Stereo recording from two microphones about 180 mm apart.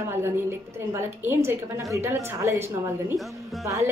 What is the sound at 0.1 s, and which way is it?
A woman's voice, 15° right (ahead or behind).